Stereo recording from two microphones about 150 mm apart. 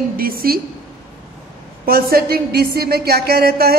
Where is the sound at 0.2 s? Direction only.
75° right (ahead or behind).